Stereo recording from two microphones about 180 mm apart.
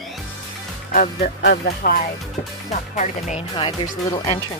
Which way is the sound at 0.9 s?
60° left (ahead or behind).